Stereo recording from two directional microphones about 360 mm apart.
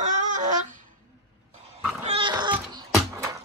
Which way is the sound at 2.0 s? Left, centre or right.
Centre.